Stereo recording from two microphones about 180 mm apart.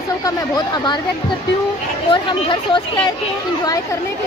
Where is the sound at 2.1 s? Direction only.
25° left (ahead or behind).